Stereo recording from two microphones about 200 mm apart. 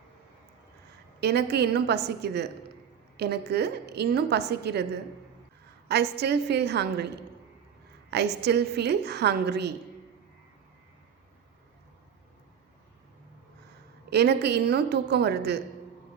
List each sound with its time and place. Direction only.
1.2 s a woman's voice: 55° right (ahead or behind)
5.9 s a woman's voice: 55° right (ahead or behind)
8.1 s a woman's voice: 55° right (ahead or behind)
14.1 s a woman's voice: 55° right (ahead or behind)